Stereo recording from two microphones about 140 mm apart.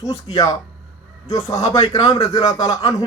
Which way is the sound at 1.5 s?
25° left (ahead or behind).